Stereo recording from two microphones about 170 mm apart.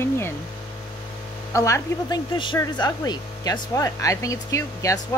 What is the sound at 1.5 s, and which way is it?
Speech, 15° left (ahead or behind).